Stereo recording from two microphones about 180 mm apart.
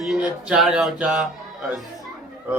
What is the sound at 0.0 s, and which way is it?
Speech, 5° right (ahead or behind).